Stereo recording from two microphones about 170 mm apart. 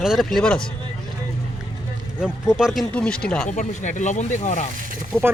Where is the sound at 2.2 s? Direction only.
5° right (ahead or behind).